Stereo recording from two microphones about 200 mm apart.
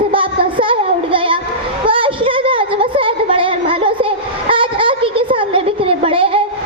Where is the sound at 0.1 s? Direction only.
25° right (ahead or behind).